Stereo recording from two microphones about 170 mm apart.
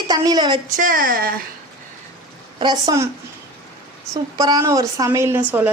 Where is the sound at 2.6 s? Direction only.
25° right (ahead or behind).